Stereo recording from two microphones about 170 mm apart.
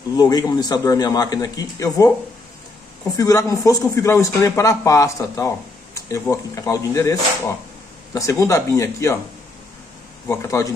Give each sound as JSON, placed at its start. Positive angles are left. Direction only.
{"t": 0.2, "sound": "a man's voice", "side_deg": 20}
{"t": 3.2, "sound": "a man's voice", "side_deg": 20}
{"t": 10.2, "sound": "a man's voice", "side_deg": 15}